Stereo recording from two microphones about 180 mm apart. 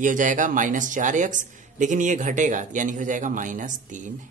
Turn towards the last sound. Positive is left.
turn(degrees=-45)  # may be behind; listen again after turning